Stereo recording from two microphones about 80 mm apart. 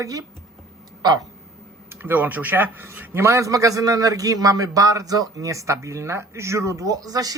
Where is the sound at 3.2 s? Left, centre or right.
Right.